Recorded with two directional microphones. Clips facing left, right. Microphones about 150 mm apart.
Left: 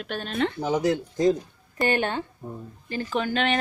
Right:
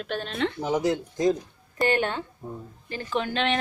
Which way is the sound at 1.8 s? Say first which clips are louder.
Even; centre (ahead or behind).